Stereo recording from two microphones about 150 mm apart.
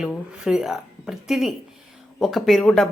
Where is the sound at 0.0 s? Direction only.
5° right (ahead or behind).